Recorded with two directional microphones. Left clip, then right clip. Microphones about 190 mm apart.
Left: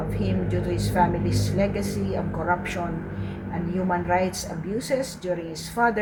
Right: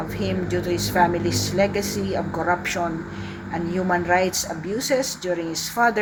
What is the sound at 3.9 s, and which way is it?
A woman's voice, 15° right (ahead or behind).